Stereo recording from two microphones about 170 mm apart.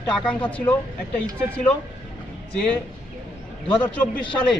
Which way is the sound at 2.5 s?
5° left (ahead or behind).